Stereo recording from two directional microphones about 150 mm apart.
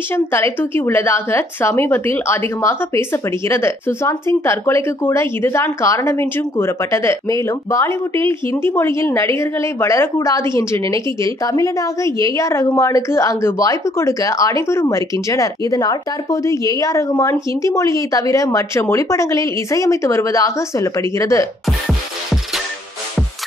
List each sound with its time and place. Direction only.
0.1 s a woman's voice: 15° left (ahead or behind)
21.6 s music: centre (ahead or behind)